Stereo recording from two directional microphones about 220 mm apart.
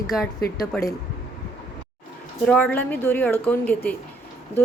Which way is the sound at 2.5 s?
5° left (ahead or behind).